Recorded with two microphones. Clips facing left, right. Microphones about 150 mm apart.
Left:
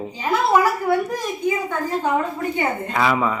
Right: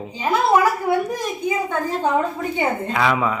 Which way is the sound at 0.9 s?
15° right (ahead or behind).